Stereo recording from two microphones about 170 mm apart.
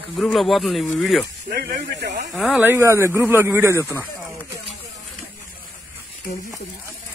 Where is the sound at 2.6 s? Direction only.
15° right (ahead or behind).